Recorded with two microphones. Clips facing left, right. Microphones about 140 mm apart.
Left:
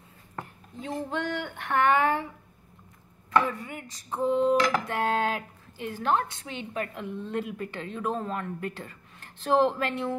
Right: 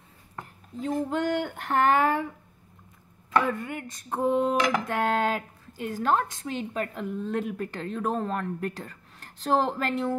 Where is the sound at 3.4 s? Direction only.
60° right (ahead or behind).